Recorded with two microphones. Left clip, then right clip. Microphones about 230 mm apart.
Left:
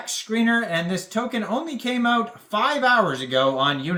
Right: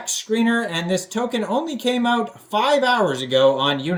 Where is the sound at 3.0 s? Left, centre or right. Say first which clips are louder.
Right 5 dB; centre.